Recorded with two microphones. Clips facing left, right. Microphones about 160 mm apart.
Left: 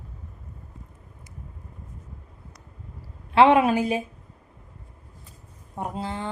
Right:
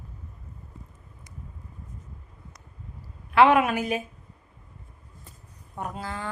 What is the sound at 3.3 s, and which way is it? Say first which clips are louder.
Speech: left 2 dB; 30° left (ahead or behind).